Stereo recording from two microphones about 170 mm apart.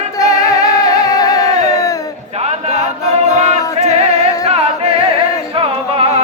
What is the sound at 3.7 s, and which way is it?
Music, 40° right (ahead or behind).